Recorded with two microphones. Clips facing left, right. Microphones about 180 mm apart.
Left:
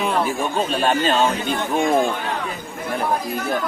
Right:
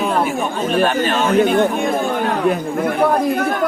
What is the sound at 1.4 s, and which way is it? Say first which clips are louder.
Speech: right 7 dB; 60° right (ahead or behind).